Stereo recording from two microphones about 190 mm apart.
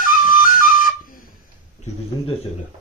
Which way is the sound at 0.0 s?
45° left (ahead or behind).